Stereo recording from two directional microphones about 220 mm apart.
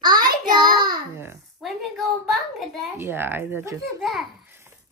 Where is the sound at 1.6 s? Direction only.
Centre (ahead or behind).